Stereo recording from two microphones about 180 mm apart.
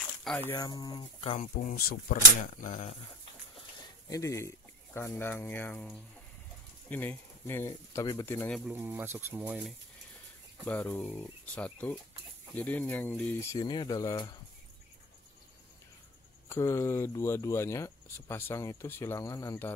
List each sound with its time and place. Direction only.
0.0 s a sound: centre (ahead or behind)
0.4 s speech: 10° left (ahead or behind)
0.7 s speech: 25° left (ahead or behind)
1.5 s speech: 50° left (ahead or behind)
4.1 s speech: 15° left (ahead or behind)
8.5 s speech: 10° right (ahead or behind)
10.6 s speech: 10° left (ahead or behind)
16.4 s speech: 15° left (ahead or behind)